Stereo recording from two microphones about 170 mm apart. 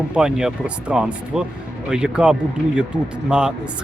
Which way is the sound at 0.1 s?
5° right (ahead or behind).